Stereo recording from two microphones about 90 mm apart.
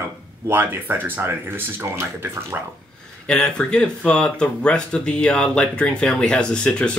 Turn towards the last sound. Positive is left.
turn(degrees=10)  # may be behind; listen again after turning